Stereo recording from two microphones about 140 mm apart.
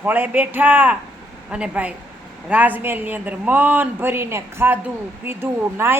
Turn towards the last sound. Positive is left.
turn(degrees=-15)  # may be behind; listen again after turning